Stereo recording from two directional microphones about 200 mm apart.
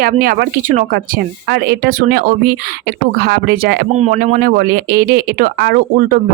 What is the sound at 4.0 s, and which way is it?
Speech, 40° right (ahead or behind).